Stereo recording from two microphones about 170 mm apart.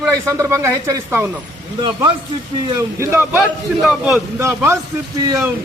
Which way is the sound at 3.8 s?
Centre (ahead or behind).